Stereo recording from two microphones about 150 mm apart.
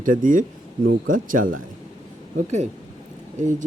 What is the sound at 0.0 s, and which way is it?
Speech, 60° right (ahead or behind).